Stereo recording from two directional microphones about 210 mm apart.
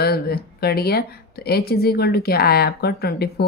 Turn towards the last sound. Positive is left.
turn(degrees=50)  # may be behind; listen again after turning